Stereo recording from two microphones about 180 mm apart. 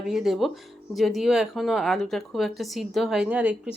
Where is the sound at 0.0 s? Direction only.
Centre (ahead or behind).